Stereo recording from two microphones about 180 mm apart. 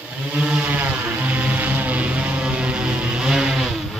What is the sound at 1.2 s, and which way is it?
Vehicle, 10° right (ahead or behind).